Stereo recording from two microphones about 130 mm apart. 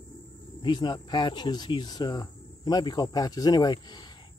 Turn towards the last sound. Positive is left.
turn(degrees=35)  # may be behind; listen again after turning